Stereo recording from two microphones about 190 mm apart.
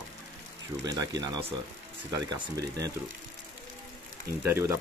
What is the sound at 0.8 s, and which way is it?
Speech, 20° right (ahead or behind).